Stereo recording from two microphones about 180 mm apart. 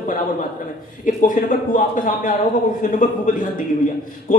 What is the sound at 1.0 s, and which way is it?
A man's voice, 45° left (ahead or behind).